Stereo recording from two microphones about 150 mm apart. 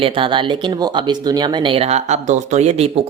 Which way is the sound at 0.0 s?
35° right (ahead or behind).